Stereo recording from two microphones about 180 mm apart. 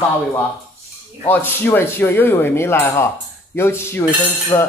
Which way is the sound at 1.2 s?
10° left (ahead or behind).